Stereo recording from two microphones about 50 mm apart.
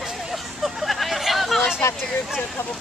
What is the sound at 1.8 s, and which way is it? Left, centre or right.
Speech, left.